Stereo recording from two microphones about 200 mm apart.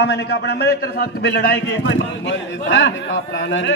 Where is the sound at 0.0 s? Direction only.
60° left (ahead or behind).